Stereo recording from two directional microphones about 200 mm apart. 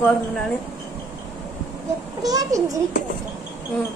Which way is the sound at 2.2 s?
15° right (ahead or behind).